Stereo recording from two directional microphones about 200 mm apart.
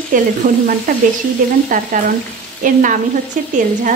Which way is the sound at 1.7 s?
40° right (ahead or behind).